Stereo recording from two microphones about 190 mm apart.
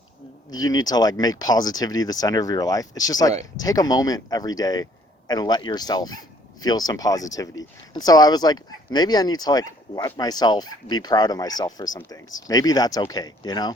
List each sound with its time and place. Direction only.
0.5 s speech: 20° left (ahead or behind)